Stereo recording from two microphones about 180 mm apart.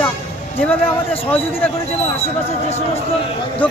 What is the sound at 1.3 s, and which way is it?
Speech, 10° left (ahead or behind).